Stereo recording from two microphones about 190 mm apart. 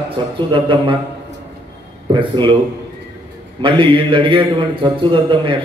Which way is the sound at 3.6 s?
25° right (ahead or behind).